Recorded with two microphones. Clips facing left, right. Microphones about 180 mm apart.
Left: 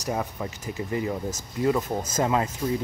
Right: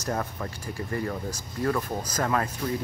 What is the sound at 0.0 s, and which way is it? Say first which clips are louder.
Speech: left 1 dB; 15° left (ahead or behind).